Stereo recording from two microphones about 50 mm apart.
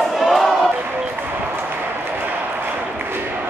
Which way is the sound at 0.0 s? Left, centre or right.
Centre.